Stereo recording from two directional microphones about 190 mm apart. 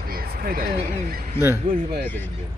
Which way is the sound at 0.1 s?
55° right (ahead or behind).